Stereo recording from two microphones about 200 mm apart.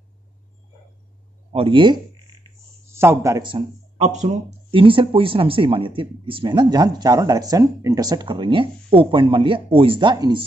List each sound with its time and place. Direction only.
1.5 s speech: 25° right (ahead or behind)
2.9 s a man's voice: 10° right (ahead or behind)
3.5 s speech: 35° right (ahead or behind)